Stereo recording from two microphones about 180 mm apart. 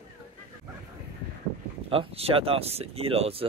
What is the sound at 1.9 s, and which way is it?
Speech, 35° right (ahead or behind).